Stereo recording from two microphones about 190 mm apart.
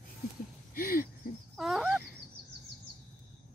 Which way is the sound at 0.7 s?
50° left (ahead or behind).